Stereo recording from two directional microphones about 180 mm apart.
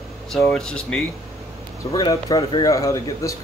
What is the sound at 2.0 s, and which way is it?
Speech, 20° left (ahead or behind).